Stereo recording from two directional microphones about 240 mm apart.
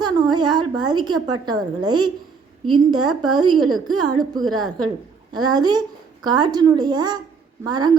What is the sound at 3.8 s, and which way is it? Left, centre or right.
A woman's voice, right.